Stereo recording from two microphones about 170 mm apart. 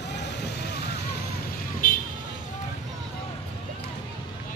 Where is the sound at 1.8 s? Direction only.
55° left (ahead or behind).